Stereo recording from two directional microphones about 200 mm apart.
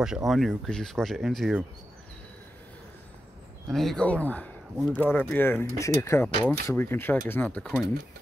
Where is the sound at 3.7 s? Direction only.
Centre (ahead or behind).